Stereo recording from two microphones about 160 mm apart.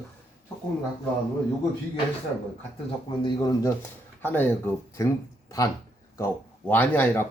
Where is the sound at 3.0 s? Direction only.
30° left (ahead or behind).